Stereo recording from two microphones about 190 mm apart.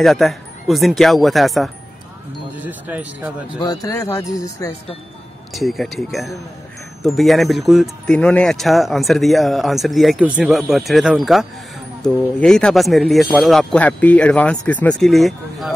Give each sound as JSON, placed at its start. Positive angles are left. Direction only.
{"t": 0.0, "sound": "speech", "side_deg": 0}
{"t": 3.5, "sound": "speech", "side_deg": 20}
{"t": 5.5, "sound": "speech", "side_deg": 0}